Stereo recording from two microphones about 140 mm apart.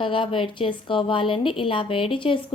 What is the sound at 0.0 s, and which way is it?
A woman's voice, 35° left (ahead or behind).